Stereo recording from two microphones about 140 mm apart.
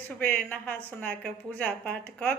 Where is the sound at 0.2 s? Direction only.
10° left (ahead or behind).